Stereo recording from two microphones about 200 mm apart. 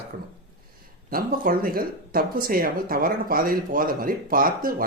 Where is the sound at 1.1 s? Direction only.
45° right (ahead or behind).